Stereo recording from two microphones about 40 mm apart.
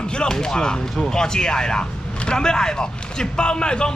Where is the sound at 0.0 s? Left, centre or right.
Left.